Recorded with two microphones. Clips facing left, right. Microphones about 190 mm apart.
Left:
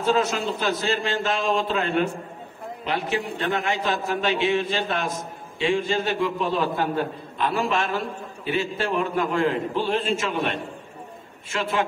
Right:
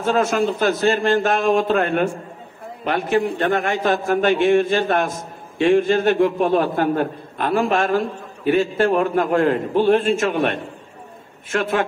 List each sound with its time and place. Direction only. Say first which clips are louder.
0.0 s a man's voice: right 4 dB; 50° right (ahead or behind)